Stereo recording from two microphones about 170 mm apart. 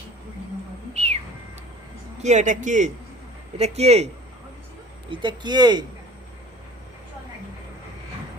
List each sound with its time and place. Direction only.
0.9 s music: 40° right (ahead or behind)
2.2 s a man's voice: 45° right (ahead or behind)
5.1 s speech: 25° right (ahead or behind)